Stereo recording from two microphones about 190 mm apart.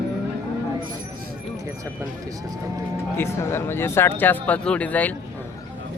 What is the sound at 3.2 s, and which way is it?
Speech, 15° left (ahead or behind).